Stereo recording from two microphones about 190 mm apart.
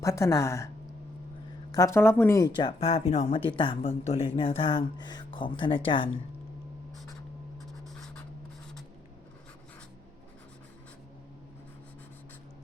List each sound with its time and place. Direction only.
0.0 s a woman's voice: 15° left (ahead or behind)
1.7 s speech: 15° left (ahead or behind)
7.6 s writing: centre (ahead or behind)